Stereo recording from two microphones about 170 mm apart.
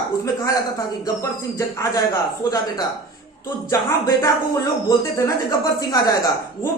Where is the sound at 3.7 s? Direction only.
15° left (ahead or behind).